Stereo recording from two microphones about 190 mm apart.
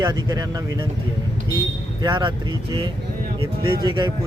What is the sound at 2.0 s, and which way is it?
Speech, 25° right (ahead or behind).